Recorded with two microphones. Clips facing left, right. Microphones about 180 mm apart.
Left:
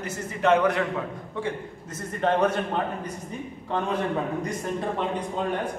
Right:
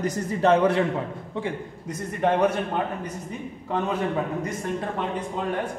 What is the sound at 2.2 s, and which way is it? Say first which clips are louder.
Speech: right 1 dB; 10° right (ahead or behind).